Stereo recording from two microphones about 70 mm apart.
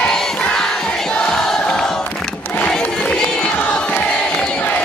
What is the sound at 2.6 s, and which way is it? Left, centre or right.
Crowd, centre.